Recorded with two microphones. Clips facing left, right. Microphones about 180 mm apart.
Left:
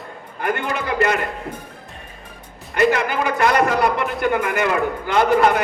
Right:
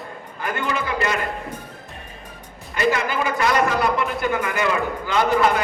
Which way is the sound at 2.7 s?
55° left (ahead or behind).